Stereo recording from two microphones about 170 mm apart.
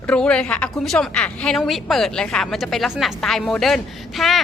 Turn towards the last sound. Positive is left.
turn(degrees=0)  # may be behind; listen again after turning